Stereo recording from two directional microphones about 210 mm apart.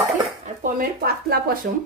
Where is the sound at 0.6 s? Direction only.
40° right (ahead or behind).